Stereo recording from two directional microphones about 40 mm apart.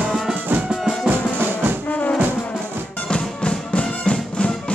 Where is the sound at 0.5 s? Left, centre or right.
Right.